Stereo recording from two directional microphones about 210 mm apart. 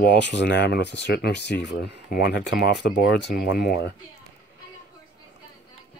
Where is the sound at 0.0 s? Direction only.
55° left (ahead or behind).